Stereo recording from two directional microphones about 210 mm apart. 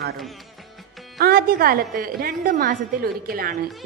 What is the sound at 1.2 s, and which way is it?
A woman's voice, 45° right (ahead or behind).